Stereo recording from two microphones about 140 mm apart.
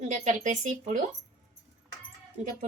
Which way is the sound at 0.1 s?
60° right (ahead or behind).